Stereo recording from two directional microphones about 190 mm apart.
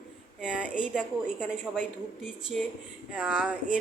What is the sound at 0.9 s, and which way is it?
Speech, 5° right (ahead or behind).